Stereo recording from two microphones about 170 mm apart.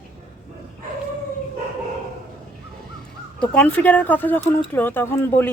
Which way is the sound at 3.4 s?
5° left (ahead or behind).